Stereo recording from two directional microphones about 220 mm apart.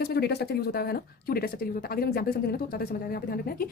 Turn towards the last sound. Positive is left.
turn(degrees=40)  # may be behind; listen again after turning